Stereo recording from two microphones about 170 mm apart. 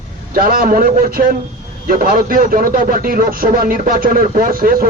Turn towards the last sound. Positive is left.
turn(degrees=-55)  # may be behind; listen again after turning